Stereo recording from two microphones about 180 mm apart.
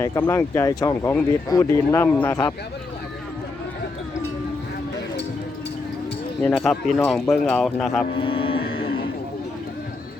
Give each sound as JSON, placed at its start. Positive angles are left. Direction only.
{"t": 0.0, "sound": "speech", "side_deg": 15}
{"t": 6.4, "sound": "speech", "side_deg": 0}
{"t": 8.1, "sound": "cattle", "side_deg": 30}